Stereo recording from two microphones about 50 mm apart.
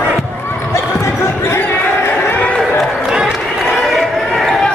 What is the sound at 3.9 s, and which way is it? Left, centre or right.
Basketball bounce, centre.